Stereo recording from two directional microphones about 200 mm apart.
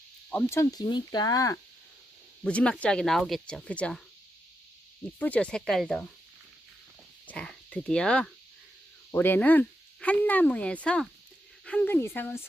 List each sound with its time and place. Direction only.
0.3 s speech: 10° left (ahead or behind)
2.4 s speech: 5° left (ahead or behind)
5.2 s speech: 5° left (ahead or behind)
7.3 s speech: 5° left (ahead or behind)